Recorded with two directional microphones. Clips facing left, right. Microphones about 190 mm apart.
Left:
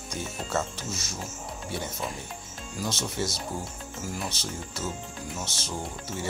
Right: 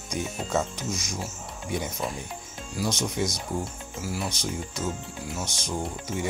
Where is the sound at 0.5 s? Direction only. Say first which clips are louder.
Right 3 dB; 15° right (ahead or behind).